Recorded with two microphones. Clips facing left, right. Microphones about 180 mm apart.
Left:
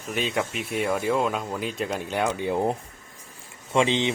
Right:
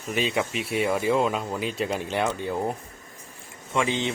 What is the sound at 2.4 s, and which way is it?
Speech, 20° left (ahead or behind).